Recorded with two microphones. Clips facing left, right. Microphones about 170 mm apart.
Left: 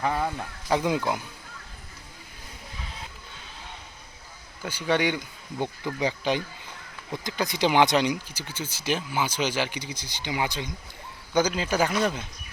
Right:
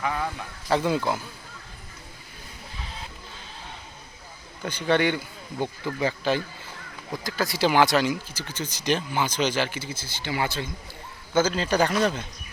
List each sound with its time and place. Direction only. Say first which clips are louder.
0.0 s speech: left 2 dB; 30° left (ahead or behind)
0.7 s speech: right 1 dB; 15° left (ahead or behind)
4.6 s speech: right 2 dB; 10° left (ahead or behind)